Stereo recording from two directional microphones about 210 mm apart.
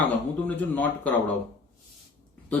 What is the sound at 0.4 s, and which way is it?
Speech, 5° left (ahead or behind).